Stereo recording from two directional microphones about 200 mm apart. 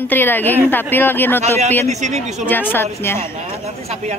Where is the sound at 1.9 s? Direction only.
35° right (ahead or behind).